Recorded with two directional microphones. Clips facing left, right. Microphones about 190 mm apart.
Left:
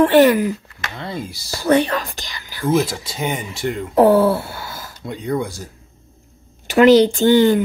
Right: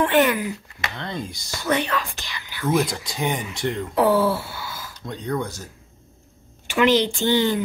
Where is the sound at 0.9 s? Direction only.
5° left (ahead or behind).